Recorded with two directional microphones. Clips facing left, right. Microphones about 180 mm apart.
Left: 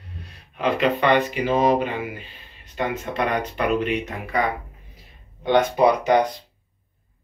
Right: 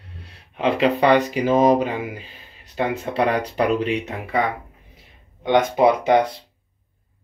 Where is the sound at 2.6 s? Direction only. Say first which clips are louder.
Right 2 dB; 30° right (ahead or behind).